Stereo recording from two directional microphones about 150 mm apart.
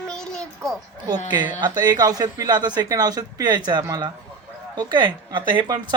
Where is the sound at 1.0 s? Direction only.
30° right (ahead or behind).